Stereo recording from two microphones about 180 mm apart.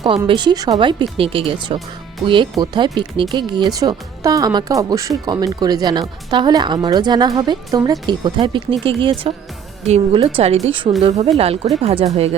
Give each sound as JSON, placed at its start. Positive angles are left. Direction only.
{"t": 0.3, "sound": "a woman's voice", "side_deg": -25}